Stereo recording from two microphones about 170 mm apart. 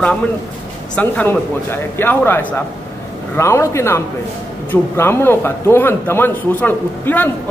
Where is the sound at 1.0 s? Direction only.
10° left (ahead or behind).